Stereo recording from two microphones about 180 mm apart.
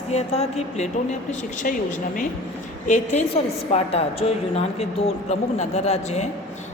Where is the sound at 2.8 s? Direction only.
40° left (ahead or behind).